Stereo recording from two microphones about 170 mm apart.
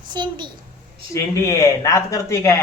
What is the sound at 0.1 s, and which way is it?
Speech, 25° right (ahead or behind).